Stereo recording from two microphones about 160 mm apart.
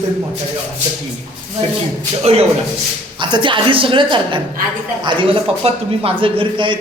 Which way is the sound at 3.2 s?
30° right (ahead or behind).